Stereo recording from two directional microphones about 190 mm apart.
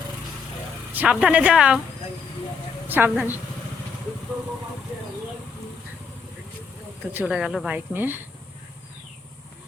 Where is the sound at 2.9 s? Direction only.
10° right (ahead or behind).